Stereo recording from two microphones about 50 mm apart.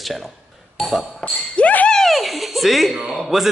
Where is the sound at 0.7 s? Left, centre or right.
Centre.